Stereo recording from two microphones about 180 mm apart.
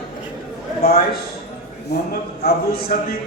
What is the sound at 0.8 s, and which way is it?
Speech, 55° left (ahead or behind).